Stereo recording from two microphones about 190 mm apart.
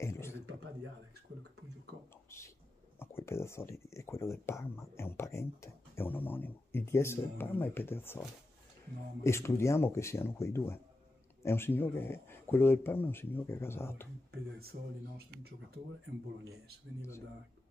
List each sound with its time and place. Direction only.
0.0 s a sound: 15° left (ahead or behind)
3.0 s speech: 10° left (ahead or behind)
9.2 s speech: 15° left (ahead or behind)
14.6 s speech: 55° right (ahead or behind)